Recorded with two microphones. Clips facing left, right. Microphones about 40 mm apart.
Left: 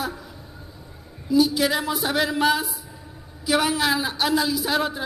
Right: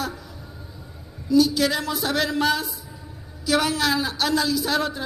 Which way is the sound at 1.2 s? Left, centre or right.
Centre.